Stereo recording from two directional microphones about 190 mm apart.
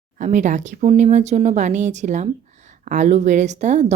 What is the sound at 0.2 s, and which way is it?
Speech, 40° right (ahead or behind).